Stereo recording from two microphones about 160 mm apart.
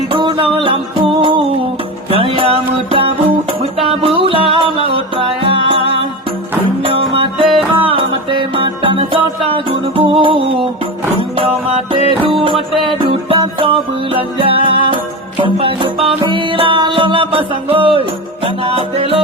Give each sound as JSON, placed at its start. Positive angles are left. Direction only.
{"t": 0.1, "sound": "music", "side_deg": -30}